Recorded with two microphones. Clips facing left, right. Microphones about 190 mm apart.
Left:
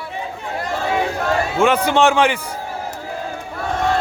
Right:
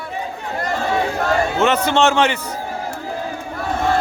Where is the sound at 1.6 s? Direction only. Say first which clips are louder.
Left 3 dB; 10° left (ahead or behind).